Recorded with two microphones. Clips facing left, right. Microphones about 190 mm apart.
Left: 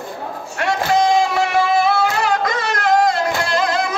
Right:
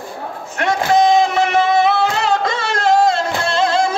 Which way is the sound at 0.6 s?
20° right (ahead or behind).